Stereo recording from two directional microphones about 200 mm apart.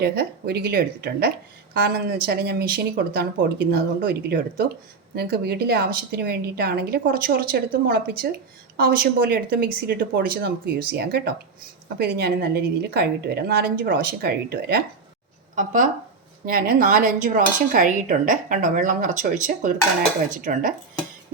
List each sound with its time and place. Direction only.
0.0 s a woman's voice: 55° right (ahead or behind)
15.5 s speech: 40° right (ahead or behind)